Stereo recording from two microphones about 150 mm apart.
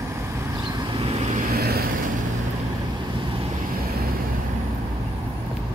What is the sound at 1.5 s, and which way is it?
Vehicle, 90° right.